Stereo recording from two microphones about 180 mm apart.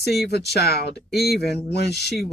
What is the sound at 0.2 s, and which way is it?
Speech, 65° left (ahead or behind).